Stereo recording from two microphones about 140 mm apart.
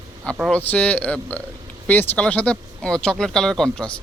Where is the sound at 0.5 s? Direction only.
10° left (ahead or behind).